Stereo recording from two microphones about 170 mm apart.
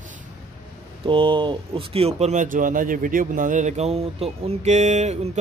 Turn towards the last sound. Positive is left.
turn(degrees=-40)  # may be behind; listen again after turning